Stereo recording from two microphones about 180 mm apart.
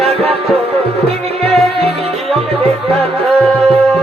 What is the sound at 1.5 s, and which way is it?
Music, centre (ahead or behind).